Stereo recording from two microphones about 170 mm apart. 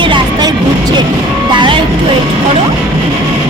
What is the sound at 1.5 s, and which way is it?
Music, 30° right (ahead or behind).